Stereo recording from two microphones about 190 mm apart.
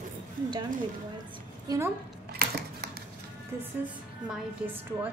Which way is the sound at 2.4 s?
55° right (ahead or behind).